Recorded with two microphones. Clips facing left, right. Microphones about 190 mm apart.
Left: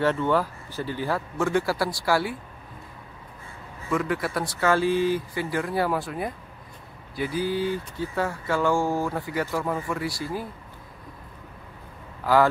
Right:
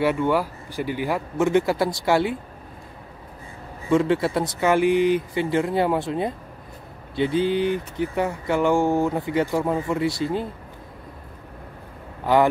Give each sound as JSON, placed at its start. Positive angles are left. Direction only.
{"t": 0.0, "sound": "speech", "side_deg": -10}
{"t": 3.9, "sound": "speech", "side_deg": -25}